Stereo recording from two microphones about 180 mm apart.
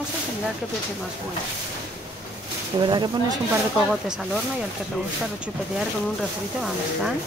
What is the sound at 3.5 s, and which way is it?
Speech, 5° right (ahead or behind).